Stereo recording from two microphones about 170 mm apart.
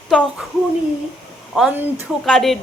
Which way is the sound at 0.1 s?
5° left (ahead or behind).